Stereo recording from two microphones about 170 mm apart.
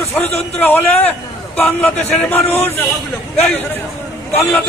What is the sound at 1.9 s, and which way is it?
Speech, 40° left (ahead or behind).